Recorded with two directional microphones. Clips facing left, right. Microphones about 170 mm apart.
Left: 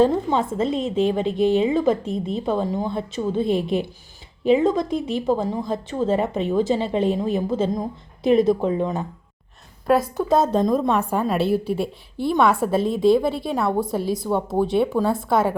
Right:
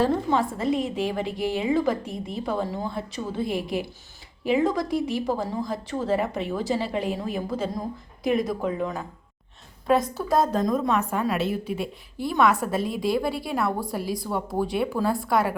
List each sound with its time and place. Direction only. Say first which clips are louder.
0.0 s a woman's voice: left 4 dB; 20° left (ahead or behind)
9.8 s a woman's voice: left 3 dB; 5° left (ahead or behind)
10.2 s a woman's voice: left 4 dB; 25° left (ahead or behind)
13.3 s a woman's voice: left 4 dB; 5° right (ahead or behind)
13.6 s a woman's voice: left 6 dB; 25° left (ahead or behind)